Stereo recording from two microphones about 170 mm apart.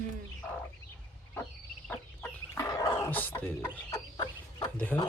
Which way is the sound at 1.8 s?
10° left (ahead or behind).